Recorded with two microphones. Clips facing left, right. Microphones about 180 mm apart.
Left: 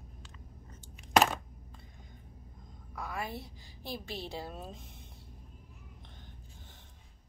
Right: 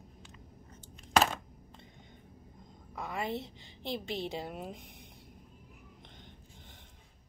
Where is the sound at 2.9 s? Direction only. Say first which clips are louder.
Right 3 dB; 20° right (ahead or behind).